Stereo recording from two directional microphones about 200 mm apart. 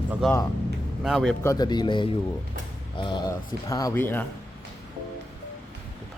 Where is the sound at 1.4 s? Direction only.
20° left (ahead or behind).